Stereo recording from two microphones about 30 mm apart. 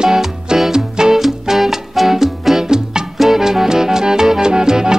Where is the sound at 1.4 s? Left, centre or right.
Centre.